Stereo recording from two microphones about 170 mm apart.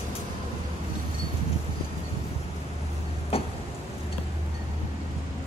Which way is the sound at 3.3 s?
35° left (ahead or behind).